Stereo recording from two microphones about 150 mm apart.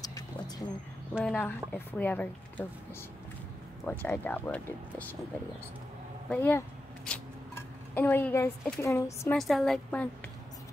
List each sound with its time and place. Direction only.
0.0 s a sound: 25° left (ahead or behind)
1.1 s a woman's voice: 5° left (ahead or behind)
3.8 s a woman's voice: 10° left (ahead or behind)
6.3 s a woman's voice: 10° left (ahead or behind)
7.9 s a woman's voice: 15° left (ahead or behind)
9.3 s a woman's voice: centre (ahead or behind)